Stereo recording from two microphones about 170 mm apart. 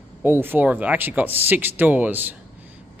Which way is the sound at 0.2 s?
10° right (ahead or behind).